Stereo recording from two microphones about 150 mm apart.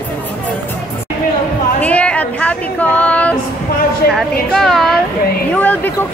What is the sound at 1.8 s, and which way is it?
A woman's voice, 10° left (ahead or behind).